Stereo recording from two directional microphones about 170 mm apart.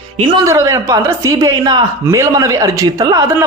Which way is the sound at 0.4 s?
15° right (ahead or behind).